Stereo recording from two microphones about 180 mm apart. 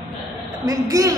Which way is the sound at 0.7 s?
20° right (ahead or behind).